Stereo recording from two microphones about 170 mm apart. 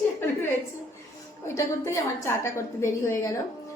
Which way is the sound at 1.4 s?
15° left (ahead or behind).